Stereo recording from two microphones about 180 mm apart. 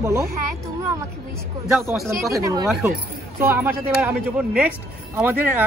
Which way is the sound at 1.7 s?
5° right (ahead or behind).